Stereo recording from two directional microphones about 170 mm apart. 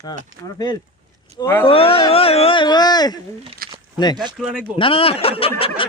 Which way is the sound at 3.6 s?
60° right (ahead or behind).